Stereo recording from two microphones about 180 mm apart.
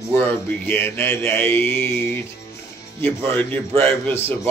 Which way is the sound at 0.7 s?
10° left (ahead or behind).